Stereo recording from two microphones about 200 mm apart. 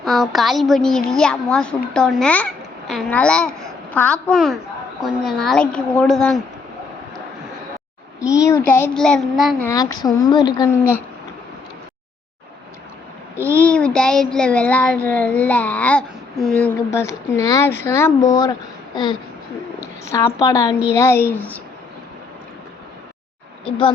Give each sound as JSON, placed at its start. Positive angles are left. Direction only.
{"t": 0.0, "sound": "a child's voice", "side_deg": 0}
{"t": 8.2, "sound": "child singing", "side_deg": 15}
{"t": 9.6, "sound": "speech", "side_deg": 20}
{"t": 13.5, "sound": "child singing", "side_deg": 5}
{"t": 18.9, "sound": "speech", "side_deg": 20}
{"t": 20.1, "sound": "child singing", "side_deg": 15}